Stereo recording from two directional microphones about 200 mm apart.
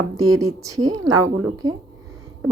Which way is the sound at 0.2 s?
15° right (ahead or behind).